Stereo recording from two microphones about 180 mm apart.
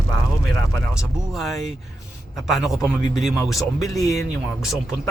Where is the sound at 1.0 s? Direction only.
Centre (ahead or behind).